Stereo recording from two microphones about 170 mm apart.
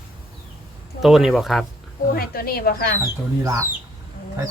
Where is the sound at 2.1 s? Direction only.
60° left (ahead or behind).